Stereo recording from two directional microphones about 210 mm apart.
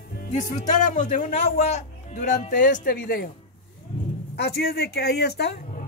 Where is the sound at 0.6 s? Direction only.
35° left (ahead or behind).